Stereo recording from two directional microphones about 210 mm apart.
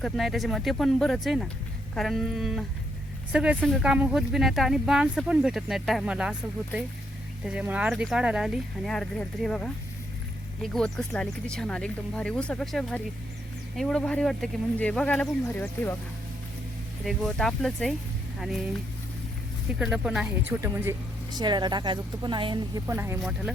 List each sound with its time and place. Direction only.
0.0 s speech: centre (ahead or behind)
7.4 s speech: 5° right (ahead or behind)
17.1 s speech: centre (ahead or behind)
19.8 s speech: 5° right (ahead or behind)